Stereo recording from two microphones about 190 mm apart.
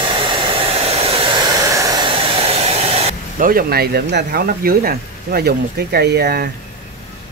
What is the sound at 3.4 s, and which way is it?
Speech, 50° right (ahead or behind).